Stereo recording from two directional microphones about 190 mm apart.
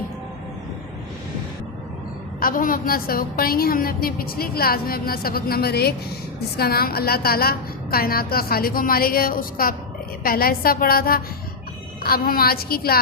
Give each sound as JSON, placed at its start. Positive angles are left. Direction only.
{"t": 2.4, "sound": "a woman's voice", "side_deg": 45}